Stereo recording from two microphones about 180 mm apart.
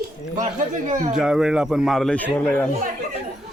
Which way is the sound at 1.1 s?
5° right (ahead or behind).